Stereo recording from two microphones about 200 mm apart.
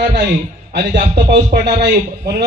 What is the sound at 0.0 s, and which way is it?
A man's voice, 55° right (ahead or behind).